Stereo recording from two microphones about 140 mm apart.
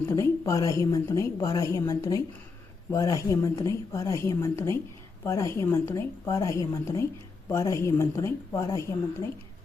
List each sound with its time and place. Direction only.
0.1 s a woman's voice: 20° left (ahead or behind)